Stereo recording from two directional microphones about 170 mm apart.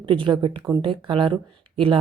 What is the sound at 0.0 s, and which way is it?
Speech, 30° right (ahead or behind).